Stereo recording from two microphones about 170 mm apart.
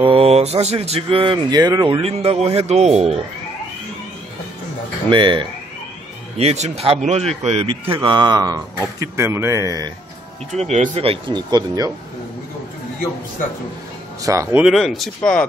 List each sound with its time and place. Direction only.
0.0 s speech: 35° right (ahead or behind)
5.1 s a man's voice: 30° right (ahead or behind)
7.9 s a man's voice: 25° right (ahead or behind)
10.5 s speech: 40° right (ahead or behind); by 11.9 s 25° right (ahead or behind)
14.2 s speech: 15° right (ahead or behind)
14.6 s speech: centre (ahead or behind)